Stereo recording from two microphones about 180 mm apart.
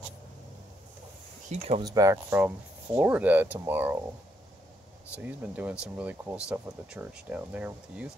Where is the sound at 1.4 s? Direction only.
35° right (ahead or behind).